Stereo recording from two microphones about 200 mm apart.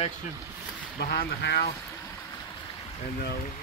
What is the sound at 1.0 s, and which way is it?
Speech, 50° left (ahead or behind).